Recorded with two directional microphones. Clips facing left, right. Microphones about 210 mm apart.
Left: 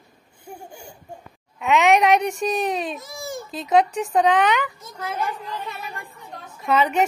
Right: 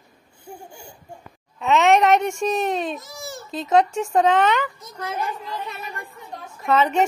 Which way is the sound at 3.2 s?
10° left (ahead or behind).